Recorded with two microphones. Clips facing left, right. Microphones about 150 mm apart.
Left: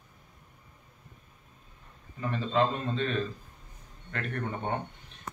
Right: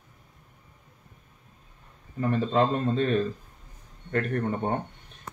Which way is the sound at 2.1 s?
45° right (ahead or behind).